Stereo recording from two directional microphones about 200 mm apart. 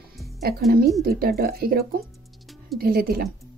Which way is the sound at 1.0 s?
50° right (ahead or behind).